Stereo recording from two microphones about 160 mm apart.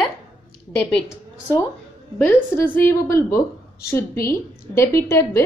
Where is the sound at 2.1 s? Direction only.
10° left (ahead or behind).